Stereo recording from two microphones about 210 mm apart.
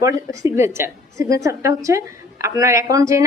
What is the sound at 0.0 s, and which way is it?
A woman's voice, 15° right (ahead or behind).